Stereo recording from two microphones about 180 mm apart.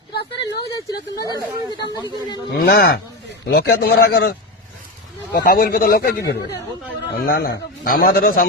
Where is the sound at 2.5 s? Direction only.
60° left (ahead or behind).